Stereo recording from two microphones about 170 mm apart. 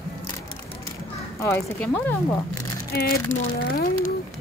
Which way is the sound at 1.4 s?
20° left (ahead or behind).